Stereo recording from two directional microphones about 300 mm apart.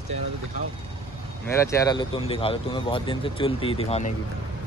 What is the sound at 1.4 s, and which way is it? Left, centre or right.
Speech, centre.